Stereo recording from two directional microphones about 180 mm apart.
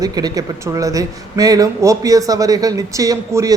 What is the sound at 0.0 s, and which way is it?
Speech, 20° right (ahead or behind).